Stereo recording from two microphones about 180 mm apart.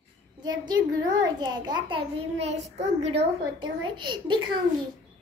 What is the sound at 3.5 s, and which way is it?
Speech, 25° right (ahead or behind).